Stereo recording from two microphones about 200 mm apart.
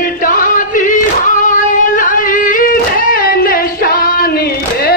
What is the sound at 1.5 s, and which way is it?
Singing, 40° left (ahead or behind).